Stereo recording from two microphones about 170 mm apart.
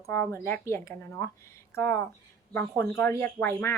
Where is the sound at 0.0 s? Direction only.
15° left (ahead or behind).